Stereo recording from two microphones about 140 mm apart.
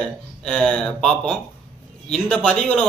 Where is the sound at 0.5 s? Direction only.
5° left (ahead or behind).